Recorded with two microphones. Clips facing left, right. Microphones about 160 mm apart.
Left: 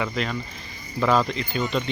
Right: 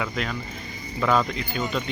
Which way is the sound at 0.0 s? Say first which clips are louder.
Left 2 dB; centre (ahead or behind).